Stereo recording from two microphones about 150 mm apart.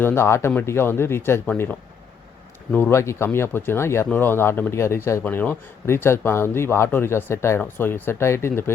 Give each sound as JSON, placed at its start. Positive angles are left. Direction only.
{"t": 0.0, "sound": "speech", "side_deg": 15}
{"t": 2.7, "sound": "speech", "side_deg": 15}